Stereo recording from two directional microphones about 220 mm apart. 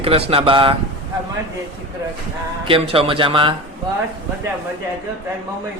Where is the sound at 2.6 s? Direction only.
25° right (ahead or behind).